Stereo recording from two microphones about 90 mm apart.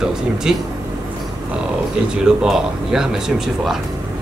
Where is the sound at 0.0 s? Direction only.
5° right (ahead or behind).